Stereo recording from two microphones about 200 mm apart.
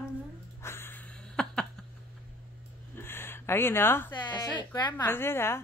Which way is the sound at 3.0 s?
10° left (ahead or behind).